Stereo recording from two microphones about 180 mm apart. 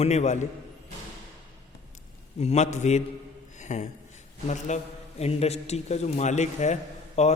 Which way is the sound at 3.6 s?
40° left (ahead or behind).